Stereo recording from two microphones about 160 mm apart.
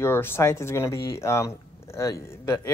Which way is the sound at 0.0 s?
15° left (ahead or behind).